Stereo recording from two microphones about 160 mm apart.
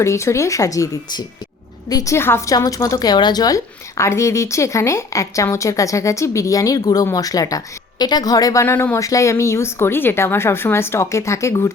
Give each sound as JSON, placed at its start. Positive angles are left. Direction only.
{"t": 0.0, "sound": "a woman's voice", "side_deg": 20}